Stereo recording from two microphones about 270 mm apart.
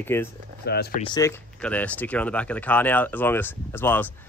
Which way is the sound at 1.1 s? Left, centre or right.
Centre.